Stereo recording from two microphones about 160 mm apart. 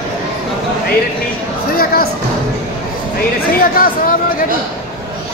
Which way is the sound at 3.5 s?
60° left (ahead or behind).